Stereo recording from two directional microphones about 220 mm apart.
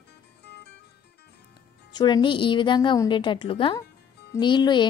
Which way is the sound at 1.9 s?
20° left (ahead or behind).